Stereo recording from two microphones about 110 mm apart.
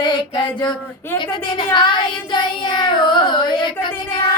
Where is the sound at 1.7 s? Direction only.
45° left (ahead or behind).